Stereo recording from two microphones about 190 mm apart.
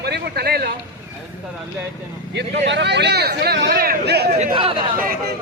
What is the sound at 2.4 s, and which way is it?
A man's voice, 65° right (ahead or behind).